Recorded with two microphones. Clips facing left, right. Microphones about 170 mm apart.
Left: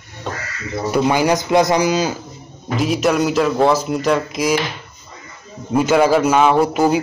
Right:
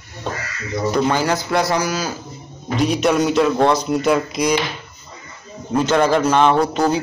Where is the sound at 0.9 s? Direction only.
10° left (ahead or behind).